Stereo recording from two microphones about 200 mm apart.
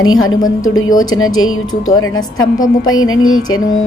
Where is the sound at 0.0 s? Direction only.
90° left.